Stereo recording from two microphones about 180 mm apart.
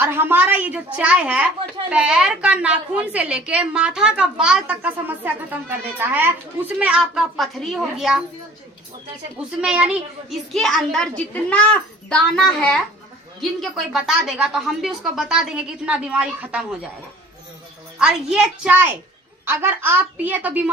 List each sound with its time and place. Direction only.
0.0 s a woman's voice: 10° right (ahead or behind)
9.6 s a woman's voice: 5° right (ahead or behind)
18.0 s a woman's voice: 5° right (ahead or behind)